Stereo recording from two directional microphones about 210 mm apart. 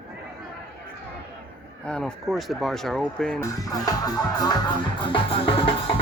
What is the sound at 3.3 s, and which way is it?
Music, 15° left (ahead or behind).